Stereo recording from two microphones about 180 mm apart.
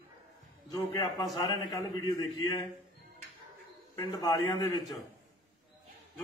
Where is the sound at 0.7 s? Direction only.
20° left (ahead or behind).